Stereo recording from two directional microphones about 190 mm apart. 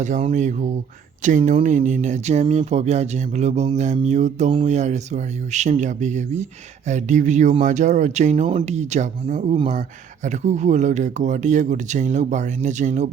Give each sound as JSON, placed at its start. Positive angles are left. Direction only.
{"t": 0.0, "sound": "speech", "side_deg": -35}